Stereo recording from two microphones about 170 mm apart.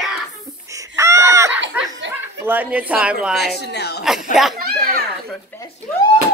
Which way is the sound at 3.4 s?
80° left.